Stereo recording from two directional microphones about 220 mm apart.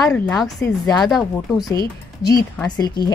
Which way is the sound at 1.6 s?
15° left (ahead or behind).